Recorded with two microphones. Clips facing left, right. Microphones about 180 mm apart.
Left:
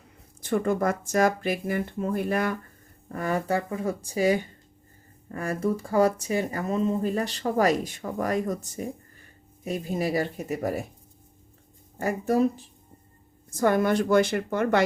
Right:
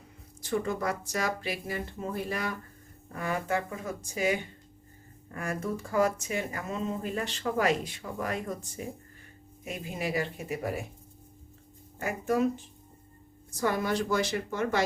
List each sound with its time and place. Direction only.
0.4 s speech: 55° left (ahead or behind)
3.2 s speech: 40° left (ahead or behind)
11.9 s speech: 35° left (ahead or behind)
13.5 s a woman's voice: 50° left (ahead or behind)